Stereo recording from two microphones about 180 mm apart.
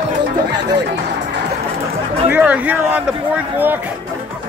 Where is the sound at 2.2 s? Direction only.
10° right (ahead or behind).